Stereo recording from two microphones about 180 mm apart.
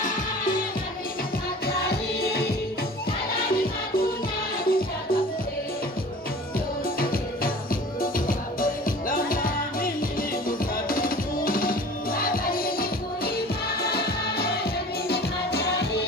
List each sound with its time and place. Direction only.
0.0 s music: 45° left (ahead or behind)
1.9 s music: 60° left (ahead or behind)
7.0 s music: 55° left (ahead or behind)
10.9 s music: 50° left (ahead or behind); by 16.1 s 65° left (ahead or behind)